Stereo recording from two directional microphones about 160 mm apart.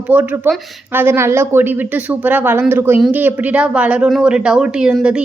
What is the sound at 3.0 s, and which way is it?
Speech, centre (ahead or behind).